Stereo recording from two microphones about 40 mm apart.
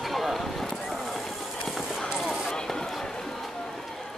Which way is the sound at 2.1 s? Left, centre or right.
Centre.